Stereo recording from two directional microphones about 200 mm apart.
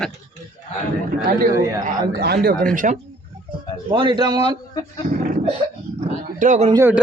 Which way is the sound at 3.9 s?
25° right (ahead or behind).